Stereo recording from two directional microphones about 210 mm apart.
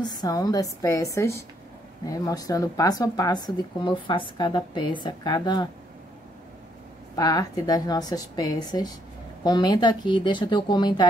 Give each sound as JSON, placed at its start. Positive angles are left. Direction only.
{"t": 0.0, "sound": "a woman's voice", "side_deg": 20}
{"t": 7.2, "sound": "a woman's voice", "side_deg": 15}